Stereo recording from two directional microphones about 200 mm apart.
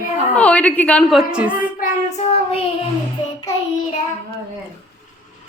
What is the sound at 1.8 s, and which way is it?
Child singing, 35° left (ahead or behind).